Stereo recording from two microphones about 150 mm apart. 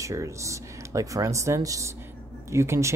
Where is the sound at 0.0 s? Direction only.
20° right (ahead or behind).